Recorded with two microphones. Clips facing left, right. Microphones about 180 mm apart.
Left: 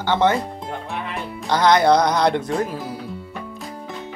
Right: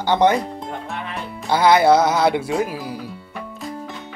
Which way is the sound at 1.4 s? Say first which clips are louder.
Right 1 dB; 10° right (ahead or behind).